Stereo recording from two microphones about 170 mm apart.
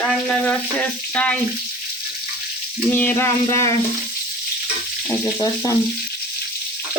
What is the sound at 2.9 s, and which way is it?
Speech, 10° left (ahead or behind).